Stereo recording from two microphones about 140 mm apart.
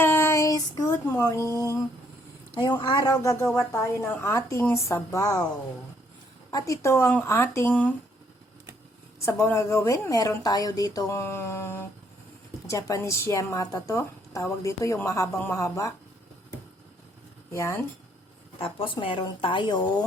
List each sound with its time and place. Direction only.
0.0 s child singing: 15° left (ahead or behind)
1.2 s a woman's voice: 20° left (ahead or behind)
1.5 s a sound: 20° right (ahead or behind)
2.5 s a woman's voice: 35° left (ahead or behind)
3.4 s speech: 10° left (ahead or behind)
3.7 s a woman's voice: 20° left (ahead or behind)
6.5 s a woman's voice: 25° left (ahead or behind)
9.2 s a woman's voice: 20° left (ahead or behind)
17.5 s a woman's voice: 20° left (ahead or behind)
18.6 s speech: 40° left (ahead or behind)